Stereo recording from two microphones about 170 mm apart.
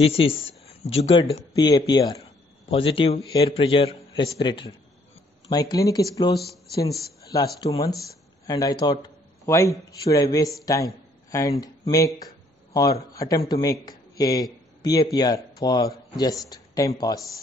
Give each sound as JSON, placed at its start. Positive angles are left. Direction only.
{"t": 0.0, "sound": "a man's voice", "side_deg": 35}
{"t": 6.3, "sound": "speech", "side_deg": 0}
{"t": 6.7, "sound": "a man's voice", "side_deg": 20}
{"t": 13.1, "sound": "a man's voice", "side_deg": 20}